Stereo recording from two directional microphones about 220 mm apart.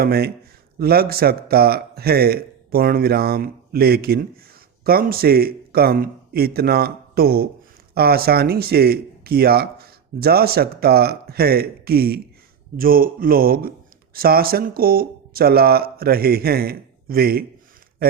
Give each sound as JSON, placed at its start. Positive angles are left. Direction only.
{"t": 0.0, "sound": "speech", "side_deg": -45}